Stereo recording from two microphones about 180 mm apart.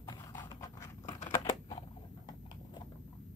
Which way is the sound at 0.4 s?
15° left (ahead or behind).